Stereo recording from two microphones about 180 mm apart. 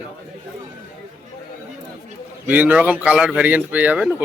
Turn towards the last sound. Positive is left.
turn(degrees=-10)  # may be behind; listen again after turning